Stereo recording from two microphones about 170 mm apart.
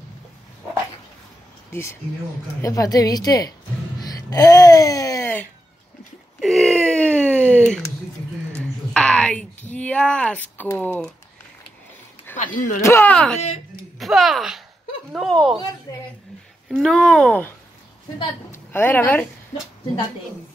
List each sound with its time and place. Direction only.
1.7 s a woman's voice: 15° left (ahead or behind)
6.4 s a sound: centre (ahead or behind)
9.7 s speech: 10° left (ahead or behind)
12.3 s a sound: 10° left (ahead or behind)
12.8 s speech: 15° left (ahead or behind)
15.9 s a woman's voice: 20° left (ahead or behind)
16.6 s a woman's voice: centre (ahead or behind)